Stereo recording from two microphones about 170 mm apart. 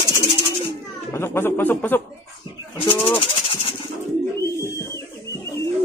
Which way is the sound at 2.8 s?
30° left (ahead or behind).